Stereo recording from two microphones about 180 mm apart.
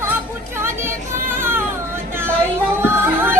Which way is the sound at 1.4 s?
15° right (ahead or behind).